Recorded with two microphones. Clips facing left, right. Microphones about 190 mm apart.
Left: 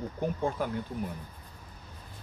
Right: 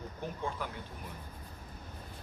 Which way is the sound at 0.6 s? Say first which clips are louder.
Left 8 dB; 50° left (ahead or behind).